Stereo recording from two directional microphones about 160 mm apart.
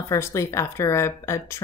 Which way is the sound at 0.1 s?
20° left (ahead or behind).